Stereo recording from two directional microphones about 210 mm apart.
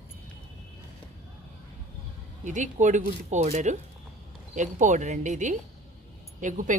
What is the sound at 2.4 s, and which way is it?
Speech, 35° right (ahead or behind).